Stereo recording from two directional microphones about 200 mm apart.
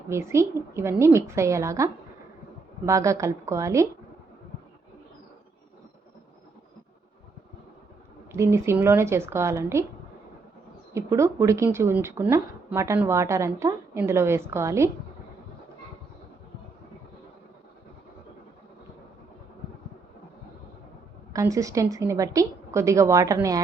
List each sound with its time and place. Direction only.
0.1 s speech: 15° right (ahead or behind)
8.3 s speech: 15° right (ahead or behind)
10.9 s speech: 15° right (ahead or behind)
21.3 s speech: 15° right (ahead or behind)